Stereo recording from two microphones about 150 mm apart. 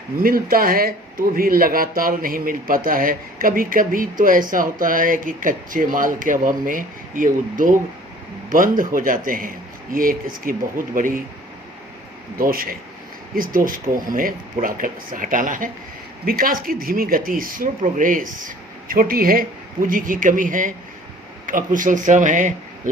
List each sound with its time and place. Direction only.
0.2 s speech: 75° right (ahead or behind)
12.4 s speech: 75° right (ahead or behind)
16.2 s speech: 75° right (ahead or behind)
19.9 s speech: 65° right (ahead or behind)